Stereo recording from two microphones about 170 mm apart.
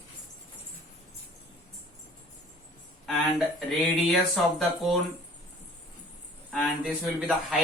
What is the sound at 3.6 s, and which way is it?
Speech, centre (ahead or behind).